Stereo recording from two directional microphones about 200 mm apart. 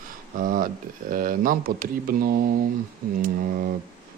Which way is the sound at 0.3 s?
45° right (ahead or behind).